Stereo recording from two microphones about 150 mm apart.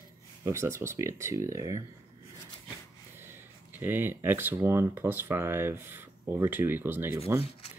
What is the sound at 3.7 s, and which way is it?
Speech, 15° right (ahead or behind).